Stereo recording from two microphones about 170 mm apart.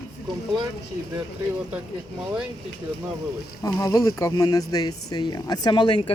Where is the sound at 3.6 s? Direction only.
20° left (ahead or behind).